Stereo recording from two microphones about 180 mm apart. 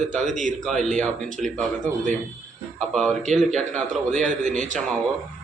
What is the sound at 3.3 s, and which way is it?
A man's voice, 40° right (ahead or behind).